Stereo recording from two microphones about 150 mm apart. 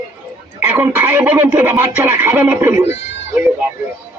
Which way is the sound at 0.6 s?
10° right (ahead or behind).